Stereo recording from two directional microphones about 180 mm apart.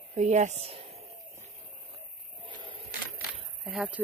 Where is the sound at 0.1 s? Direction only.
40° right (ahead or behind).